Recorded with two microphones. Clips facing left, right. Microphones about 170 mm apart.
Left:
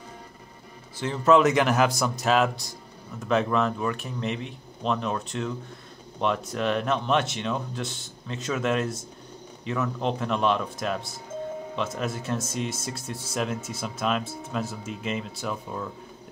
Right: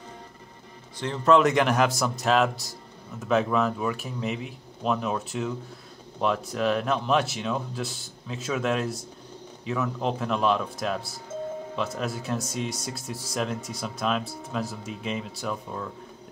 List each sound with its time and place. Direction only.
0.9 s speech: 5° left (ahead or behind)